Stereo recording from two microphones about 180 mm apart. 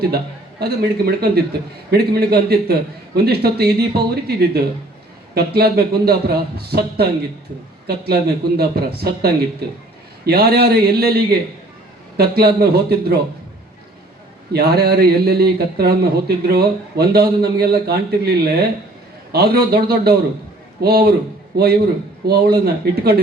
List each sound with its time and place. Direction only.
0.6 s speech: 60° right (ahead or behind)
14.5 s a man's voice: 60° right (ahead or behind)